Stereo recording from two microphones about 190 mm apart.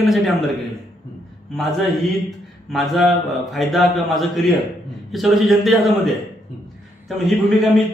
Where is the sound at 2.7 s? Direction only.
Centre (ahead or behind).